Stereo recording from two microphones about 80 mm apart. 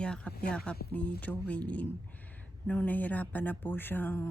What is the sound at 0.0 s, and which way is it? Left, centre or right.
Speech, centre.